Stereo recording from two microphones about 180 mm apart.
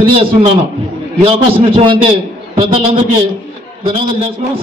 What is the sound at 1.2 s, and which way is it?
Speech, 30° right (ahead or behind).